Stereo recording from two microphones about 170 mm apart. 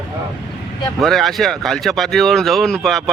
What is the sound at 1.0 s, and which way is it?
A man's voice, centre (ahead or behind).